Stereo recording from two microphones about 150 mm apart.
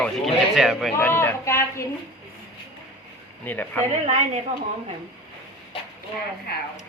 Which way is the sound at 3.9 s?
50° right (ahead or behind).